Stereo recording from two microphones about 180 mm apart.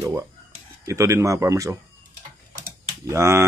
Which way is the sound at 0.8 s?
15° right (ahead or behind).